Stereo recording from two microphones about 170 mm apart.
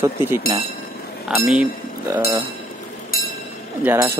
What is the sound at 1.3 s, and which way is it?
Speech, 5° right (ahead or behind).